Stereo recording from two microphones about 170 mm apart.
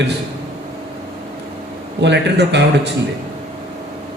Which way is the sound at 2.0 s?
90° right.